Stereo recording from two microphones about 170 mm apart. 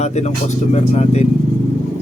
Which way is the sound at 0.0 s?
40° left (ahead or behind).